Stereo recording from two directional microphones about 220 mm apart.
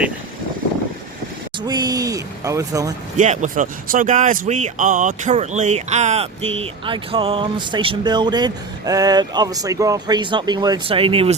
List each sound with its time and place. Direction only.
1.5 s speech: 20° right (ahead or behind)
3.2 s speech: 35° right (ahead or behind)